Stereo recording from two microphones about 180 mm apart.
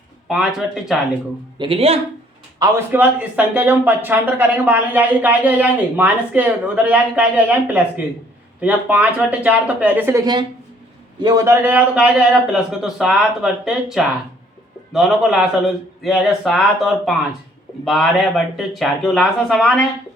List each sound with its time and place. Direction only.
1.5 s speech: 30° right (ahead or behind)
2.6 s a man's voice: 10° right (ahead or behind)